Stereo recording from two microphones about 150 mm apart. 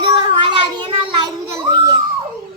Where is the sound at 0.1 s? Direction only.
30° right (ahead or behind).